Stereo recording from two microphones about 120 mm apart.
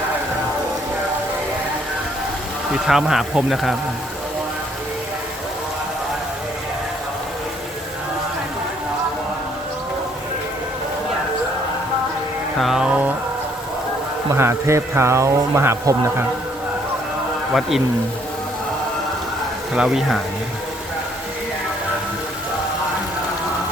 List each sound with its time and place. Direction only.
2.7 s speech: 5° right (ahead or behind)
12.5 s a sound: centre (ahead or behind)
14.3 s speech: 20° right (ahead or behind)
17.5 s speech: centre (ahead or behind)
19.7 s speech: 5° right (ahead or behind)